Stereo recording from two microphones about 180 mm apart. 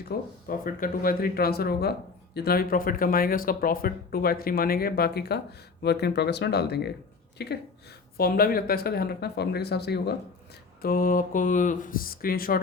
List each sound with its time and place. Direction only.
0.1 s speech: 60° left (ahead or behind)
8.2 s speech: 55° left (ahead or behind)
10.8 s speech: 50° left (ahead or behind)